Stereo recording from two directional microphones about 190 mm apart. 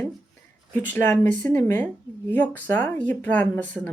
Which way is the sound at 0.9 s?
10° left (ahead or behind).